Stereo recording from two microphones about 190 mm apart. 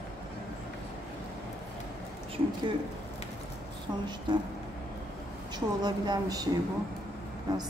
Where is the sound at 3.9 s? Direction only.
20° right (ahead or behind).